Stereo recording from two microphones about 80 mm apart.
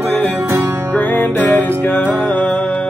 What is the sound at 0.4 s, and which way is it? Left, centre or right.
Music, right.